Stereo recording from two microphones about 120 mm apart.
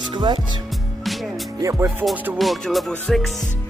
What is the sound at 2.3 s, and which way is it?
Music, centre (ahead or behind).